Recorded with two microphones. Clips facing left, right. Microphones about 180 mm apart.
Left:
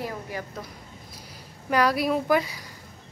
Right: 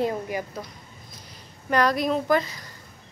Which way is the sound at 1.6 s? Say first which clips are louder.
Right 1 dB; 5° left (ahead or behind).